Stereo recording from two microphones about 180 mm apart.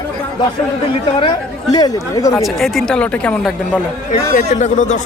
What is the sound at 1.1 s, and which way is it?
A woman's voice, 25° left (ahead or behind).